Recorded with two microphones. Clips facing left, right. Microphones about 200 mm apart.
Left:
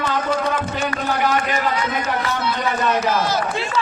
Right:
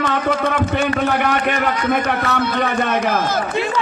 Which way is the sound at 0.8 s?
60° right (ahead or behind).